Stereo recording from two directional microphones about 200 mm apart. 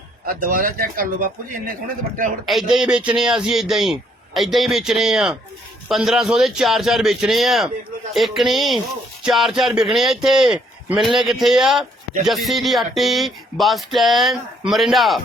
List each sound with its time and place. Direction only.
0.3 s a man's voice: 45° right (ahead or behind)
2.5 s speech: centre (ahead or behind)